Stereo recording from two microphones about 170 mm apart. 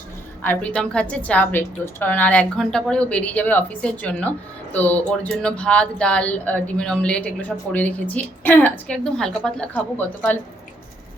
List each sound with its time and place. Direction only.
0.4 s a woman's voice: 10° left (ahead or behind)